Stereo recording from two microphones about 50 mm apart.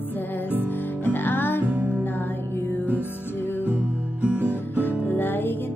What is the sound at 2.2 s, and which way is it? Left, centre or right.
Music, left.